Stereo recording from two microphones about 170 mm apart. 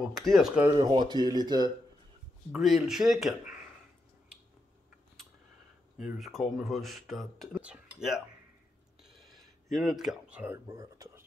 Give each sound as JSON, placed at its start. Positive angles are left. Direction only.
{"t": 0.1, "sound": "speech", "side_deg": 0}
{"t": 0.7, "sound": "speech", "side_deg": -25}
{"t": 2.5, "sound": "speech", "side_deg": 0}
{"t": 5.9, "sound": "speech", "side_deg": -5}
{"t": 9.0, "sound": "a sound", "side_deg": 0}